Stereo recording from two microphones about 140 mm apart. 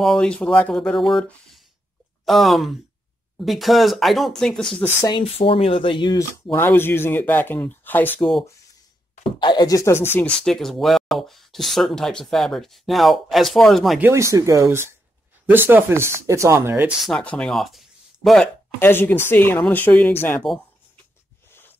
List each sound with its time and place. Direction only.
0.0 s speech: 5° left (ahead or behind)
5.2 s speech: 40° left (ahead or behind)
6.3 s speech: 15° left (ahead or behind)
8.2 s speech: centre (ahead or behind)
9.4 s speech: 30° left (ahead or behind); by 10.3 s 15° left (ahead or behind)
10.4 s speech: centre (ahead or behind)
13.9 s speech: 15° right (ahead or behind)
17.0 s speech: 5° left (ahead or behind)
18.8 s speech: 15° left (ahead or behind)
21.5 s a sound: 15° left (ahead or behind)